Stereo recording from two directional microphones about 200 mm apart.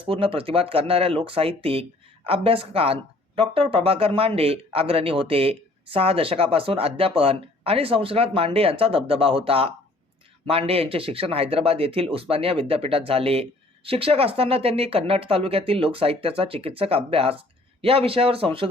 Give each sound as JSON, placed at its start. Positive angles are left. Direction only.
{"t": 0.0, "sound": "speech", "side_deg": -25}